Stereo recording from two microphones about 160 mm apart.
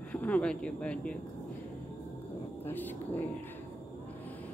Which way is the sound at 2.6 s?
10° left (ahead or behind).